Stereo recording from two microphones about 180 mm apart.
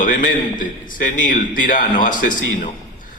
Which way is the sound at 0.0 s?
45° left (ahead or behind).